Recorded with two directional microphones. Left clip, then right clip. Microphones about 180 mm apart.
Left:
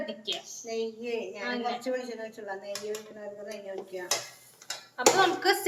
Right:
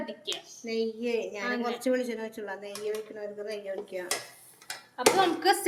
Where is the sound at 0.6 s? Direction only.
65° right (ahead or behind).